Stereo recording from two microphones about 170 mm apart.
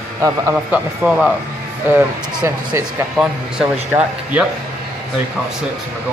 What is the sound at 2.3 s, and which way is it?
Speech, 15° right (ahead or behind).